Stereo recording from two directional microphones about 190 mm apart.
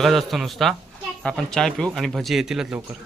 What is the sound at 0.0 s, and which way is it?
Speech, centre (ahead or behind).